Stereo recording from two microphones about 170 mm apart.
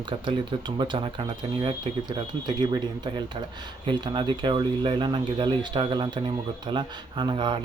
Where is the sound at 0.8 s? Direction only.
30° right (ahead or behind).